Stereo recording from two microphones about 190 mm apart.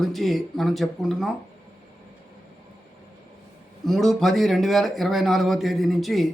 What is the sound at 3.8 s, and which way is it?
Speech, centre (ahead or behind).